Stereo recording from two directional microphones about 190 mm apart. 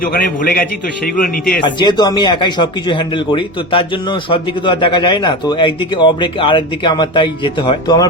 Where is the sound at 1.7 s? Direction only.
25° left (ahead or behind).